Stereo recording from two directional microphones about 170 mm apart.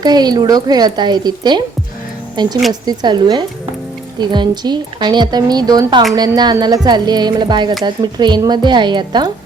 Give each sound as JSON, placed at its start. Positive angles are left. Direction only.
{"t": 0.0, "sound": "a woman's voice", "side_deg": -25}